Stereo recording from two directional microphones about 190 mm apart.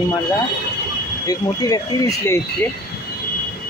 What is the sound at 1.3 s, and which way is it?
Speech, 20° left (ahead or behind).